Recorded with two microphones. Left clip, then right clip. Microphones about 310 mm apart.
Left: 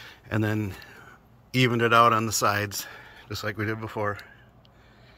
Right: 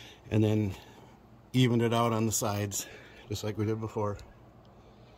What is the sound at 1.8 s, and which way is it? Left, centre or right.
Speech, left.